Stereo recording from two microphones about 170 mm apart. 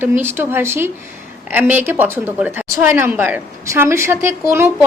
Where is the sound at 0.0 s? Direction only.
15° right (ahead or behind).